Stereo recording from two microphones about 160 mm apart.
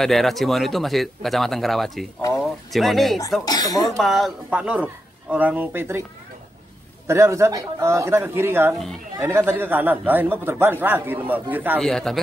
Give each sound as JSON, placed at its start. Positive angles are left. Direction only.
{"t": 0.0, "sound": "speech", "side_deg": 0}
{"t": 3.4, "sound": "speech", "side_deg": 25}
{"t": 4.0, "sound": "a man's voice", "side_deg": 0}
{"t": 7.1, "sound": "a man's voice", "side_deg": -15}
{"t": 11.8, "sound": "speech", "side_deg": 5}